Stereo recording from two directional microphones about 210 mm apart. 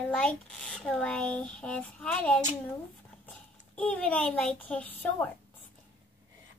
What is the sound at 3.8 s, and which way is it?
A child's voice, 5° left (ahead or behind).